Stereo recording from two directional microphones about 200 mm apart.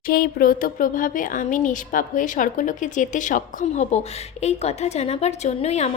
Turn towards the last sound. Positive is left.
turn(degrees=35)  # may be behind; listen again after turning